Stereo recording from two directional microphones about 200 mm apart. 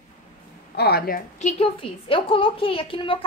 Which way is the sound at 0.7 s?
50° left (ahead or behind).